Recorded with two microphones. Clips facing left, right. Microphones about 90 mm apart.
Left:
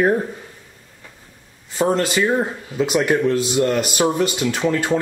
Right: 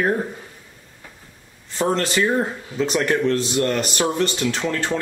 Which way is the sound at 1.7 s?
10° left (ahead or behind).